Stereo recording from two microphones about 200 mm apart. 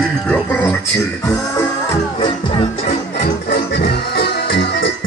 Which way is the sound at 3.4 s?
50° left (ahead or behind).